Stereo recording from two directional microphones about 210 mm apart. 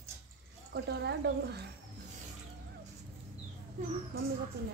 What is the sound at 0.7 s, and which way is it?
Speech, 55° right (ahead or behind).